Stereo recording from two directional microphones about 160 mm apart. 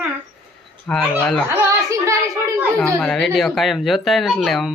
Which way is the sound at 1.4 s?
20° right (ahead or behind).